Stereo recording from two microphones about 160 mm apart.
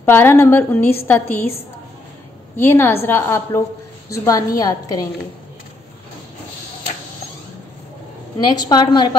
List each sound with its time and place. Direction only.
0.1 s a woman's voice: 15° left (ahead or behind)
8.4 s a woman's voice: 25° left (ahead or behind)